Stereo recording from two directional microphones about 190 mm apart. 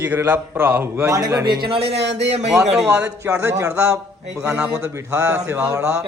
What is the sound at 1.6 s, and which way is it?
Speech, 30° right (ahead or behind).